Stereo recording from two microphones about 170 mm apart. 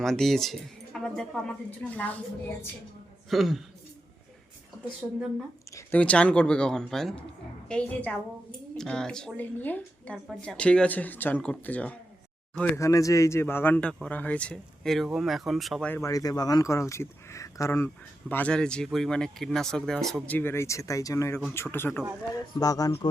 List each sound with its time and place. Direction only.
0.0 s speech: centre (ahead or behind)
3.2 s speech: centre (ahead or behind)
5.7 s speech: 10° left (ahead or behind)
15.9 s speech: 20° left (ahead or behind)